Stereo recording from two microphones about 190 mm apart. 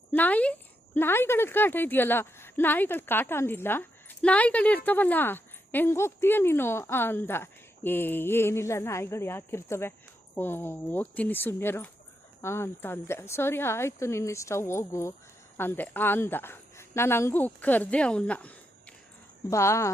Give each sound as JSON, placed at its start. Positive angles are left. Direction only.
{"t": 0.1, "sound": "speech", "side_deg": 10}